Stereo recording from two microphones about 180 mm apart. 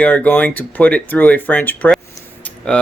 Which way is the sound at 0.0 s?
10° left (ahead or behind).